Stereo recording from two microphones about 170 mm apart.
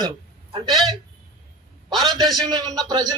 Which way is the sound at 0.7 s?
Centre (ahead or behind).